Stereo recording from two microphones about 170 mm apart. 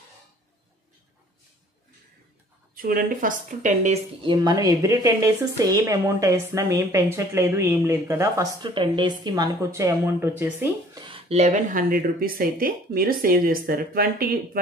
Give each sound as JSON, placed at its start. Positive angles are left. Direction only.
{"t": 2.7, "sound": "speech", "side_deg": -60}
{"t": 4.2, "sound": "a woman's voice", "side_deg": -25}
{"t": 8.6, "sound": "speech", "side_deg": -30}
{"t": 11.0, "sound": "speech", "side_deg": -30}